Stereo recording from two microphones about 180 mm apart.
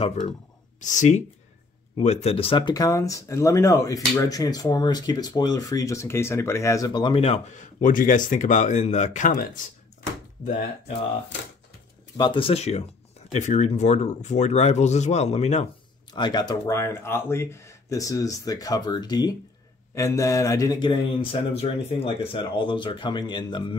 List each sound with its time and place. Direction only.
0.0 s speech: 40° left (ahead or behind)
12.2 s speech: 30° left (ahead or behind)
16.1 s speech: 25° left (ahead or behind)